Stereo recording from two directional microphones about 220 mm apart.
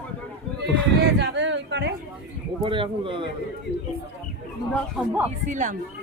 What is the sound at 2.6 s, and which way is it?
Speech, 25° right (ahead or behind).